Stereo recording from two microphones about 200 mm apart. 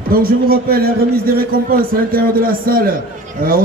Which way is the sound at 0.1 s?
45° right (ahead or behind).